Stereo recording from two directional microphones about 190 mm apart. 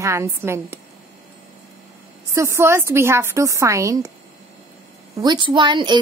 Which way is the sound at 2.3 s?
15° right (ahead or behind).